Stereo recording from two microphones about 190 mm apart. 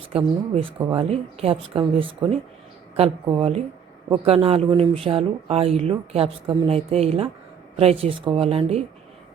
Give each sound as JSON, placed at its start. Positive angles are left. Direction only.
{"t": 0.1, "sound": "speech", "side_deg": -30}